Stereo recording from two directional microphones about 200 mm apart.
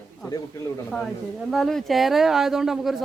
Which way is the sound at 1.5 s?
Centre (ahead or behind).